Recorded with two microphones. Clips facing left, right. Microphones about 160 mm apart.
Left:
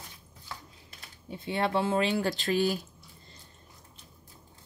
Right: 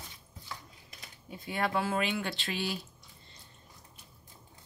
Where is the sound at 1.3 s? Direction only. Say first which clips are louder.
Left 3 dB; 25° left (ahead or behind); by 2.8 s 45° left (ahead or behind).